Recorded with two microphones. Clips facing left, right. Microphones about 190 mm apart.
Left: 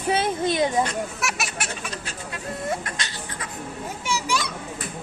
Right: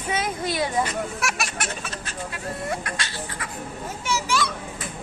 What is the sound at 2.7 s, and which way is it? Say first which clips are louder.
A child's voice: even; 20° left (ahead or behind).